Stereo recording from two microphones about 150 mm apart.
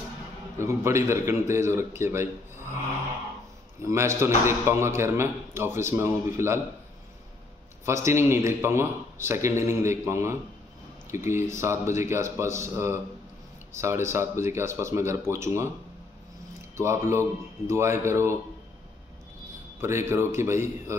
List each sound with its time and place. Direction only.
0.6 s a man's voice: 20° right (ahead or behind)
3.8 s a man's voice: 20° right (ahead or behind)
7.8 s a man's voice: 20° right (ahead or behind)
16.7 s a man's voice: 20° right (ahead or behind)
19.8 s a man's voice: 15° right (ahead or behind)